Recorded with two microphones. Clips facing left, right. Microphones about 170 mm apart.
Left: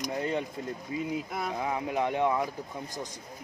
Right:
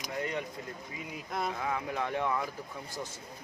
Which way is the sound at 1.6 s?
25° left (ahead or behind).